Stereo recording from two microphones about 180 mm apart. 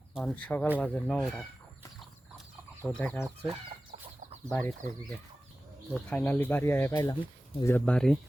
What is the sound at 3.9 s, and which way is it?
Chicken, 40° right (ahead or behind).